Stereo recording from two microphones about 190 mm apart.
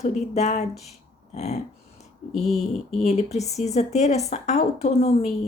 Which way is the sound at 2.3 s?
Centre (ahead or behind).